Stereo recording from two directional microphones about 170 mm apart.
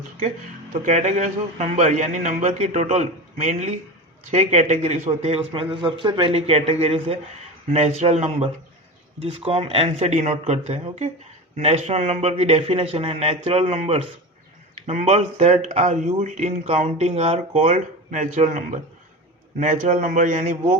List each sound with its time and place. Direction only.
0.7 s a man's voice: 45° right (ahead or behind)